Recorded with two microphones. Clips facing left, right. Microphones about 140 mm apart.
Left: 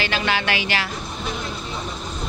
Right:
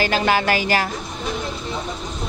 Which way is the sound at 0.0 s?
40° right (ahead or behind).